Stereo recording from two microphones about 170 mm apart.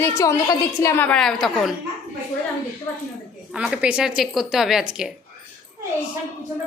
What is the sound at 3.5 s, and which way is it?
A child's voice, 5° right (ahead or behind).